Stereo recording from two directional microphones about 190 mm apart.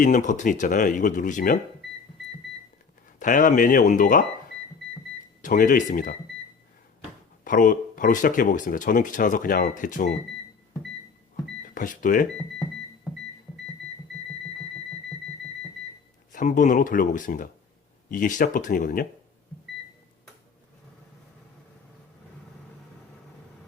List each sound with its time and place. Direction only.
0.0 s speech: 40° left (ahead or behind)
3.2 s speech: 45° left (ahead or behind)
5.4 s speech: 45° left (ahead or behind)
7.4 s speech: 45° left (ahead or behind)
11.6 s speech: 45° left (ahead or behind)
16.3 s speech: 45° left (ahead or behind)